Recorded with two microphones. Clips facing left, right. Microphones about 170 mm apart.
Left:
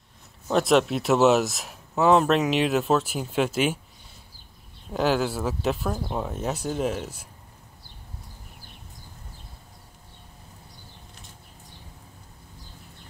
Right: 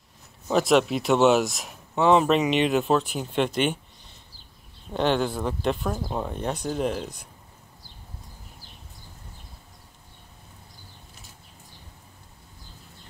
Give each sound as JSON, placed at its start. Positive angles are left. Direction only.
{"t": 0.5, "sound": "speech", "side_deg": 0}
{"t": 4.9, "sound": "speech", "side_deg": 5}